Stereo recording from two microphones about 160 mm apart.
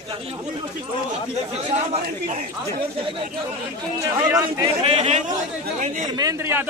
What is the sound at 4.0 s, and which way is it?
Speech, 20° right (ahead or behind).